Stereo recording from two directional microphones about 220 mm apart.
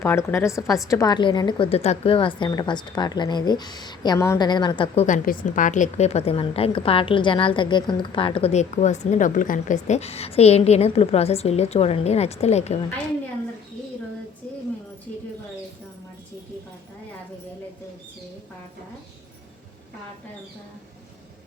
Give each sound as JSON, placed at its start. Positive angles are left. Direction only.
{"t": 0.0, "sound": "a woman's voice", "side_deg": 10}
{"t": 5.0, "sound": "a woman's voice", "side_deg": 35}